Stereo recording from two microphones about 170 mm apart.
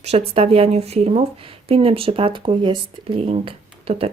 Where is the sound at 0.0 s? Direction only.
35° right (ahead or behind).